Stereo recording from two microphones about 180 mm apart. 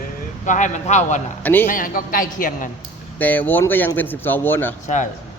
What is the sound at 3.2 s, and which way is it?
Speech, 10° left (ahead or behind).